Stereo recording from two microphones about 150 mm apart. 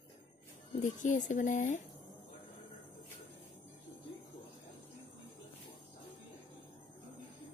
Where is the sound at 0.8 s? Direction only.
55° left (ahead or behind).